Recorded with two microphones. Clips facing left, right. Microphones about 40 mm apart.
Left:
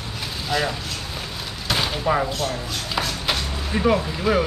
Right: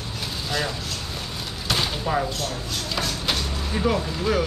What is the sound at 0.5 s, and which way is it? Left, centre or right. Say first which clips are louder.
Speech: left 4 dB; centre.